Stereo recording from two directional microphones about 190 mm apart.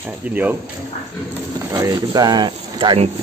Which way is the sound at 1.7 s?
15° right (ahead or behind).